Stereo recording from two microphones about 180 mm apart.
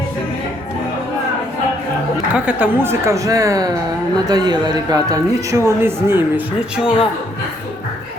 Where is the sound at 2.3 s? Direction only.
5° right (ahead or behind).